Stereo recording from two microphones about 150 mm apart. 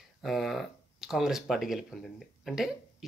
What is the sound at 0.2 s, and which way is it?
Speech, centre (ahead or behind).